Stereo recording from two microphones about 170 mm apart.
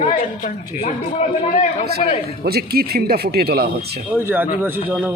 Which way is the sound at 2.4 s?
65° right (ahead or behind).